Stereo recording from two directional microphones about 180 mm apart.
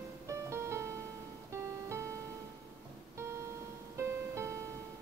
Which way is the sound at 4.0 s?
15° right (ahead or behind).